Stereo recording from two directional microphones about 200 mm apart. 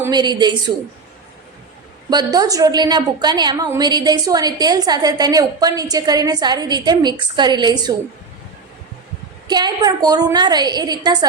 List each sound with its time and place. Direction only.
0.0 s a woman's voice: 20° right (ahead or behind)
2.0 s a woman's voice: 20° right (ahead or behind)
9.5 s a woman's voice: 20° right (ahead or behind)